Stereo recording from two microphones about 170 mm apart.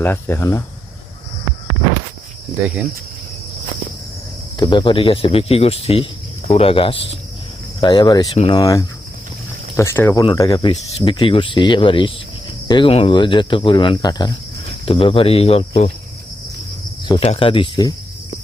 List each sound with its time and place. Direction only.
0.0 s speech: 15° left (ahead or behind)
4.5 s speech: 30° left (ahead or behind)
17.1 s speech: 35° left (ahead or behind)